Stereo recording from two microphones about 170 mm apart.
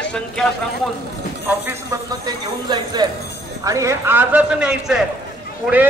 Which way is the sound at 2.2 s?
25° right (ahead or behind).